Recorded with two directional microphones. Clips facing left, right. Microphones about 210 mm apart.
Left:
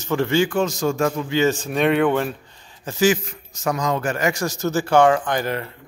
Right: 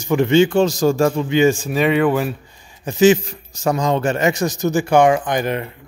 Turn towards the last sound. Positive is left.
turn(degrees=-20)  # may be behind; listen again after turning